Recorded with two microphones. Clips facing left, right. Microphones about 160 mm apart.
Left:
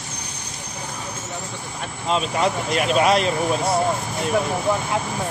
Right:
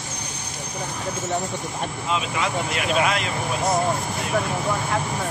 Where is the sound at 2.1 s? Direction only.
40° left (ahead or behind).